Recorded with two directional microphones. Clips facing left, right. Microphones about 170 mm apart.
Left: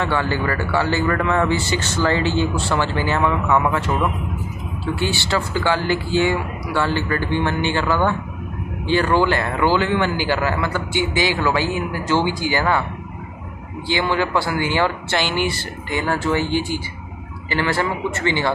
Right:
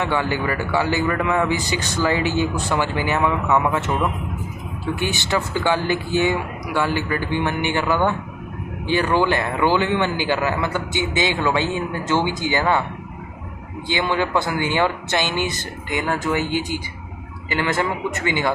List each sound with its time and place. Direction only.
0.0 s a man's voice: 15° right (ahead or behind)
13.8 s a man's voice: 20° right (ahead or behind)